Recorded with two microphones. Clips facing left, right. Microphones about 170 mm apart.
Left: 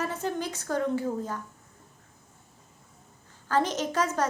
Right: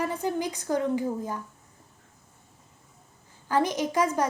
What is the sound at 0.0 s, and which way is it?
A woman's voice, 10° right (ahead or behind).